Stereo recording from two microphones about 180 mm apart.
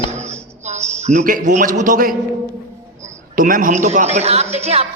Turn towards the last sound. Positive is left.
turn(degrees=-35)  # may be behind; listen again after turning